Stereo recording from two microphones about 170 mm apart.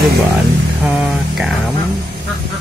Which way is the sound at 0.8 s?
5° right (ahead or behind).